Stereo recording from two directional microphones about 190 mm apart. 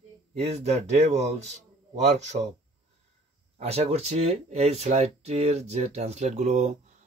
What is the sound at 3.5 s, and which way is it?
Speech, 35° right (ahead or behind).